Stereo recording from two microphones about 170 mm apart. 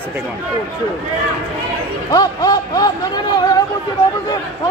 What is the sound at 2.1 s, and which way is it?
A man's voice, 20° left (ahead or behind).